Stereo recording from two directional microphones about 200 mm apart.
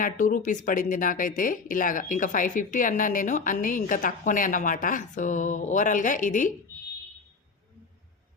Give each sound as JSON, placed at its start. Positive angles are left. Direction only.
{"t": 0.0, "sound": "speech", "side_deg": 40}